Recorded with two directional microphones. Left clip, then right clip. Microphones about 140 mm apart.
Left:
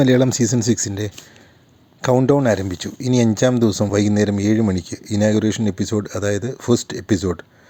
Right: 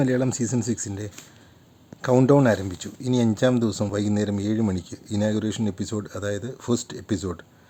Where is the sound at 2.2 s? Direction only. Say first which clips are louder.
Left 3 dB; 35° left (ahead or behind).